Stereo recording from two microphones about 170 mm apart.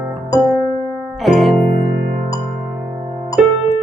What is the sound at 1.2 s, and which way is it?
Music, centre (ahead or behind).